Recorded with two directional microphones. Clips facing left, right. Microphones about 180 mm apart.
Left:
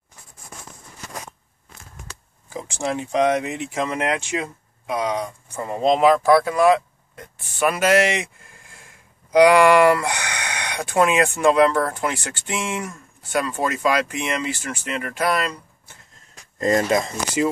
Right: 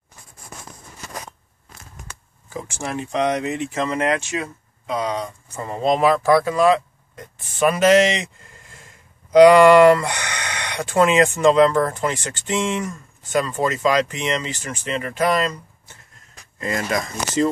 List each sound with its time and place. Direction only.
2.5 s speech: 15° left (ahead or behind)
16.5 s speech: 35° left (ahead or behind)